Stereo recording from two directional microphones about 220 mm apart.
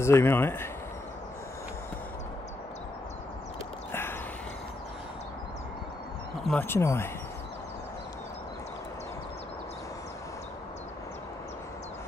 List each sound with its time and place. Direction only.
0.0 s speech: 10° left (ahead or behind)
6.4 s speech: 5° left (ahead or behind)